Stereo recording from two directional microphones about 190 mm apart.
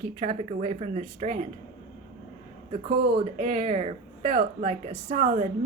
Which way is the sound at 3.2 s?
35° right (ahead or behind).